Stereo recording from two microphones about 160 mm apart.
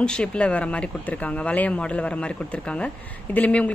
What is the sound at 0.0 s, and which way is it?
Speech, 5° left (ahead or behind).